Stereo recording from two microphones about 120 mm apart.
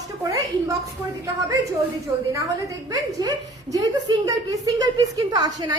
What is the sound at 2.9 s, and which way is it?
A woman's voice, 30° right (ahead or behind).